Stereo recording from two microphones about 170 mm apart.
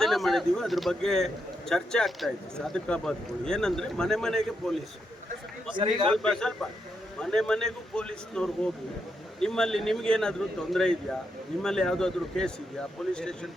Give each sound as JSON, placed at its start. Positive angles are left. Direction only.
{"t": 0.0, "sound": "a man's voice", "side_deg": 0}
{"t": 5.7, "sound": "a man's voice", "side_deg": -30}
{"t": 6.2, "sound": "a man's voice", "side_deg": 5}